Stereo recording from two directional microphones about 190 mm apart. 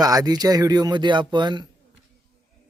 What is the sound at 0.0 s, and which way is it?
Speech, 20° right (ahead or behind).